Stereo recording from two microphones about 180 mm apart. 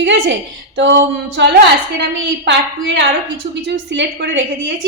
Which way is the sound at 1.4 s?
75° right (ahead or behind).